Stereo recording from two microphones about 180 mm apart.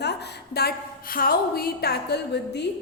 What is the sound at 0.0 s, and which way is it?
A woman's voice, 70° left (ahead or behind).